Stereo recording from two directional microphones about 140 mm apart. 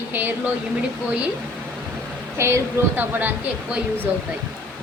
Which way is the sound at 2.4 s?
20° right (ahead or behind).